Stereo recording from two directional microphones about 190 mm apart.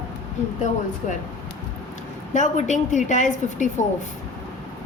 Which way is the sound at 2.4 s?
40° left (ahead or behind).